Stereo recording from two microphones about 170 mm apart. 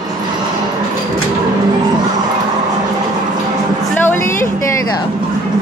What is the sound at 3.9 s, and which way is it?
A woman's voice, 15° left (ahead or behind).